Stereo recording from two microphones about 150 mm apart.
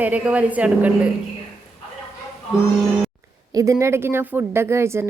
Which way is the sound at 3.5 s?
20° right (ahead or behind).